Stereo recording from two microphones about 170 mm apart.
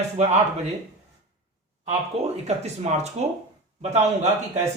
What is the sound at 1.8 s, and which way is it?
Speech, 40° right (ahead or behind).